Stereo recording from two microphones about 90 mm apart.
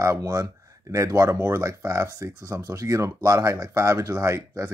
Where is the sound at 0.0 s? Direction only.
35° right (ahead or behind).